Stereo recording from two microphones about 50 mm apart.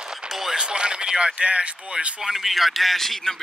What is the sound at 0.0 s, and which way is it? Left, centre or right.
Speech, centre.